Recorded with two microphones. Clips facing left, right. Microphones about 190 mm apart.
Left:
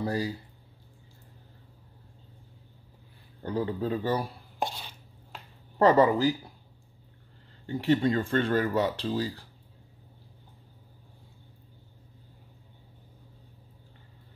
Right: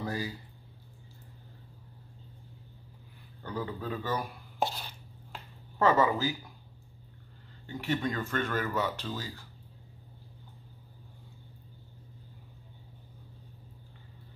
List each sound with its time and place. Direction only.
0.0 s speech: 35° left (ahead or behind)
3.4 s speech: 30° left (ahead or behind)
4.6 s chopping: centre (ahead or behind)
5.8 s speech: 35° left (ahead or behind)
7.6 s speech: 35° left (ahead or behind)